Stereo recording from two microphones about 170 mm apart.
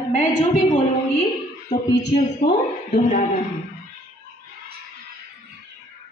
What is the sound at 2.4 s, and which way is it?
Speech, 45° left (ahead or behind).